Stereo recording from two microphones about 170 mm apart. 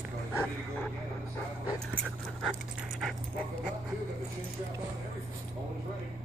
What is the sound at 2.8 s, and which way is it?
Dog, centre (ahead or behind).